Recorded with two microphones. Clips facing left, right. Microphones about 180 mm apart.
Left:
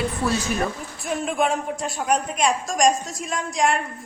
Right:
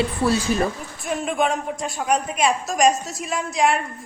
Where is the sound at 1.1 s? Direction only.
Centre (ahead or behind).